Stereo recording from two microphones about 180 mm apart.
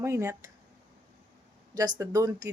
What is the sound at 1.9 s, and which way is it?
Speech, 20° right (ahead or behind).